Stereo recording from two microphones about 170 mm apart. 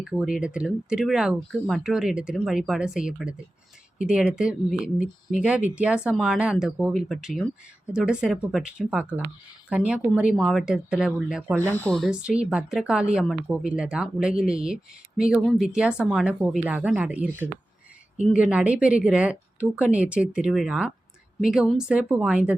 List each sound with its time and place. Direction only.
0.0 s a woman's voice: 5° right (ahead or behind)
11.7 s a woman's voice: 10° left (ahead or behind)